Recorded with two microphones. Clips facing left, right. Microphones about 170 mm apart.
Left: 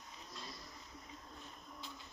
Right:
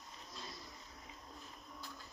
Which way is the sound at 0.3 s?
Centre (ahead or behind).